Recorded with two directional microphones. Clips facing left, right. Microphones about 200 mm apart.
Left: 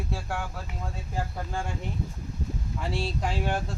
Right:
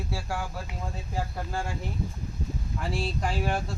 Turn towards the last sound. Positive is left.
turn(degrees=0)  # may be behind; listen again after turning